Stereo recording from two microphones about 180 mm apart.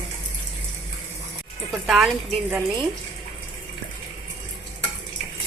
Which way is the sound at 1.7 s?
Centre (ahead or behind).